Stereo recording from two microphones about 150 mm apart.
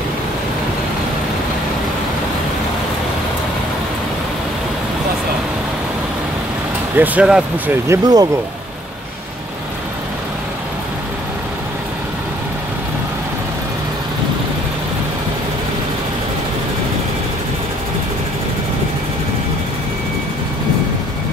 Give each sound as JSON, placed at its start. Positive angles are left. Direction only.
{"t": 7.0, "sound": "speech", "side_deg": -5}
{"t": 7.9, "sound": "speech", "side_deg": -25}